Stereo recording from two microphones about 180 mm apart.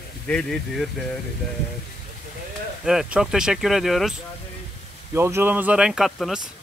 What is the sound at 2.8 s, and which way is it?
Speech, 5° right (ahead or behind).